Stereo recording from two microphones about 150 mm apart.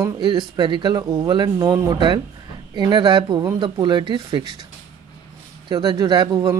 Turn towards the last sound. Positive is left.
turn(degrees=-25)  # may be behind; listen again after turning